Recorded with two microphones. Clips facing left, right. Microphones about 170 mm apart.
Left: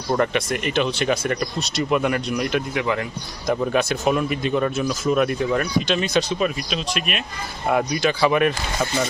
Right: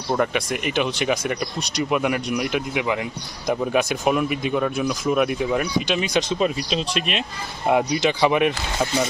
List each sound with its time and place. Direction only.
0.1 s speech: 10° right (ahead or behind)